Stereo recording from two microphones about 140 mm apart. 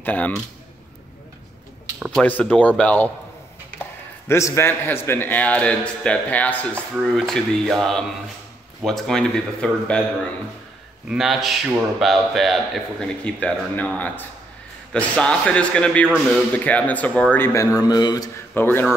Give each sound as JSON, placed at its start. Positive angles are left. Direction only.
{"t": 0.0, "sound": "a man's voice", "side_deg": 10}
{"t": 2.0, "sound": "a sound", "side_deg": -5}
{"t": 2.2, "sound": "a man's voice", "side_deg": 10}
{"t": 4.3, "sound": "a man's voice", "side_deg": 20}
{"t": 17.7, "sound": "a man's voice", "side_deg": 30}
{"t": 18.5, "sound": "a man's voice", "side_deg": 15}